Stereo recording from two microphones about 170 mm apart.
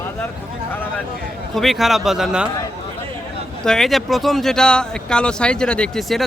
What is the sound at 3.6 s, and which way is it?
Speech, 5° left (ahead or behind).